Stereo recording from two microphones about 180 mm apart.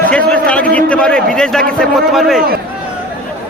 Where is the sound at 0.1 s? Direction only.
5° left (ahead or behind).